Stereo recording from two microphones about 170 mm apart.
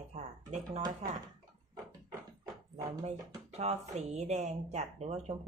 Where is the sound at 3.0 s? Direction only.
40° right (ahead or behind).